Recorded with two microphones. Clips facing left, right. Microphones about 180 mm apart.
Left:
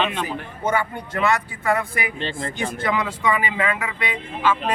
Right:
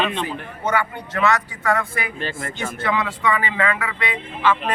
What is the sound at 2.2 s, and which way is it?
Speech, 30° left (ahead or behind).